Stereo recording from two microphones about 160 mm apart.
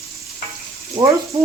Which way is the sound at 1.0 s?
35° right (ahead or behind).